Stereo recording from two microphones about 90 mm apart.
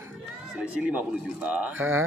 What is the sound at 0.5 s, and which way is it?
Speech, 15° right (ahead or behind).